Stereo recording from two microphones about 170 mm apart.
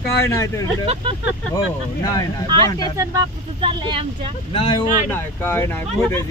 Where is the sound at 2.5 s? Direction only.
25° right (ahead or behind).